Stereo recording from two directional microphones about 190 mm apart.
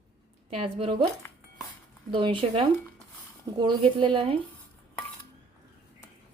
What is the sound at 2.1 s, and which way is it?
A woman's voice, 25° right (ahead or behind).